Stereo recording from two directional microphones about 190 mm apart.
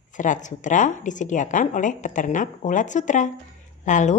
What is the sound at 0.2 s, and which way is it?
A woman's voice, 40° left (ahead or behind).